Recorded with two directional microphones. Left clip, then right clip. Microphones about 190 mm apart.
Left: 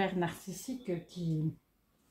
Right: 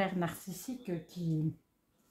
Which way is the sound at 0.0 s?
15° right (ahead or behind).